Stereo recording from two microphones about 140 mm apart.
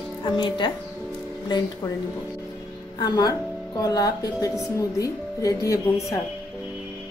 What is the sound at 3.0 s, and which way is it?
Speech, 30° left (ahead or behind).